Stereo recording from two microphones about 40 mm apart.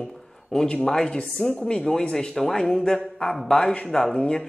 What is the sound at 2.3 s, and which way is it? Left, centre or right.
Speech, centre.